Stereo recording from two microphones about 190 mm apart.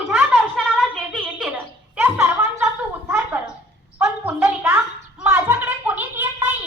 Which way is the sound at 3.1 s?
10° right (ahead or behind).